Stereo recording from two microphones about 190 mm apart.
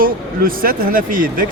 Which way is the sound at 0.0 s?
50° right (ahead or behind).